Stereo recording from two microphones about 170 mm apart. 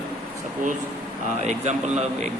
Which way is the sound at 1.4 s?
40° right (ahead or behind).